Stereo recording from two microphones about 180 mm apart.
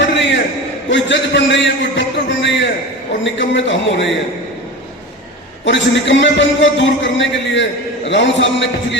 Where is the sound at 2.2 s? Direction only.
90° left.